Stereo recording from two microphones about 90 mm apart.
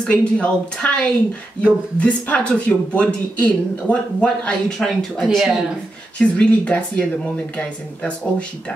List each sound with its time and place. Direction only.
0.0 s speech: 15° left (ahead or behind)
6.1 s speech: 10° left (ahead or behind)